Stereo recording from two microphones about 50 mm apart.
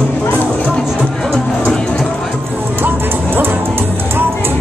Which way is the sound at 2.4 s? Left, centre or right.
Right.